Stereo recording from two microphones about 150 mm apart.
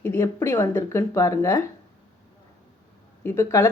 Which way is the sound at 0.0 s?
15° left (ahead or behind).